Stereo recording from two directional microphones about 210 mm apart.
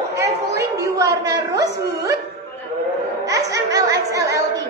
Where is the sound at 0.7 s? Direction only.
15° right (ahead or behind).